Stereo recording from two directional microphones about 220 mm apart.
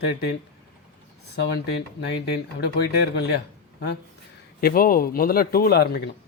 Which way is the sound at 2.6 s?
50° left (ahead or behind).